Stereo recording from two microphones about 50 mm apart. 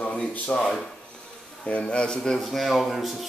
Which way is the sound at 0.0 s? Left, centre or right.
Left.